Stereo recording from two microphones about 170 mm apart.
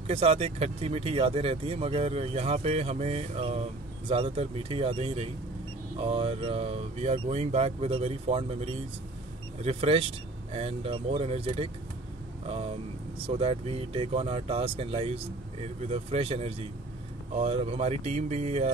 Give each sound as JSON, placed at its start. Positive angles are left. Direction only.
{"t": 0.0, "sound": "speech", "side_deg": -35}